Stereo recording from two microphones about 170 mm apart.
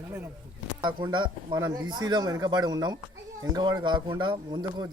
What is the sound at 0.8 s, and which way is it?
Speech, 25° right (ahead or behind).